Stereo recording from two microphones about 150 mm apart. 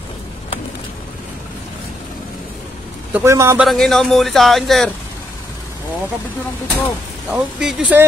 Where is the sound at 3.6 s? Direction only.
Centre (ahead or behind).